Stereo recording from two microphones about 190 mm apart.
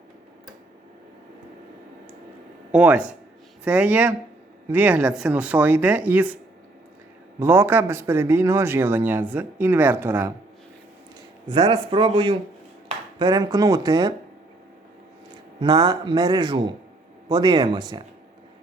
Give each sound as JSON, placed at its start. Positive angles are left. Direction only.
{"t": 2.7, "sound": "speech", "side_deg": -5}
{"t": 7.3, "sound": "speech", "side_deg": -15}
{"t": 11.4, "sound": "speech", "side_deg": -25}
{"t": 15.6, "sound": "speech", "side_deg": -20}